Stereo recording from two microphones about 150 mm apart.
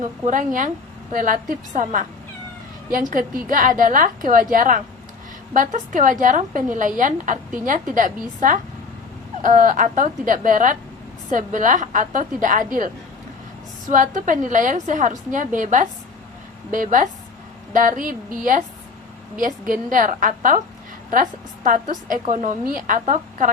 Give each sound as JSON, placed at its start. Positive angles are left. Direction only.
{"t": 0.3, "sound": "a woman's voice", "side_deg": -60}
{"t": 13.9, "sound": "a woman's voice", "side_deg": -60}